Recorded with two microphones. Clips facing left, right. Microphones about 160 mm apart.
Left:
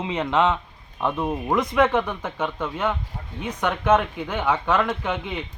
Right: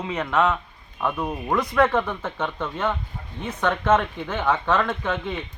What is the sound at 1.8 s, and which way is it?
Speech, 10° left (ahead or behind).